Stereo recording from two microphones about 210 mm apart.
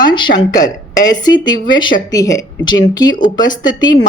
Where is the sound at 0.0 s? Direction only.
20° left (ahead or behind).